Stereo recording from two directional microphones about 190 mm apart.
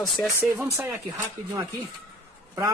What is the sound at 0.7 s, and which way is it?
Speech, 15° right (ahead or behind).